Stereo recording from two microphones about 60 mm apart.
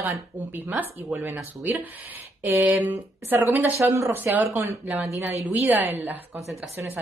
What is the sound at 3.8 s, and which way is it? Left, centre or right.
Speech, right.